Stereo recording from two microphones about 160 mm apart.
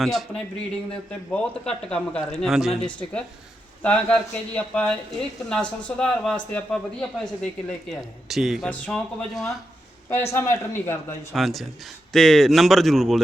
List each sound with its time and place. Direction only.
0.0 s speech: centre (ahead or behind)
1.3 s a man's voice: 5° left (ahead or behind)
10.1 s a man's voice: 15° left (ahead or behind)
11.3 s speech: centre (ahead or behind)